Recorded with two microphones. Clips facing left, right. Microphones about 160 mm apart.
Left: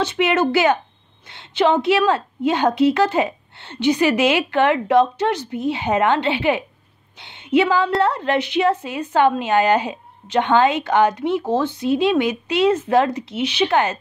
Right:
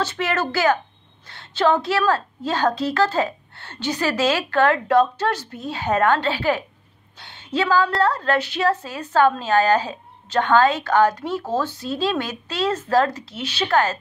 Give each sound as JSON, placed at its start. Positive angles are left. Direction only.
{"t": 0.0, "sound": "a woman's voice", "side_deg": 20}